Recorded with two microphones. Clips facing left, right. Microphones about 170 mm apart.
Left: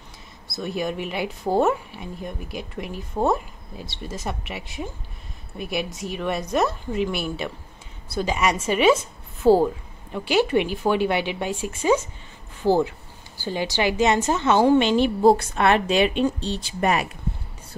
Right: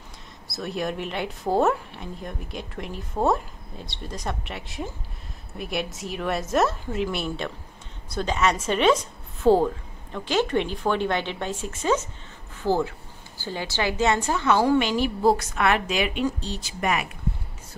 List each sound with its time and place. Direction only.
0.5 s a woman's voice: centre (ahead or behind); by 17.1 s 35° left (ahead or behind)